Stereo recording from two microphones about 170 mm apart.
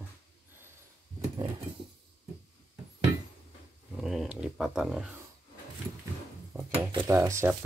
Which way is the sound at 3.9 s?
Centre (ahead or behind).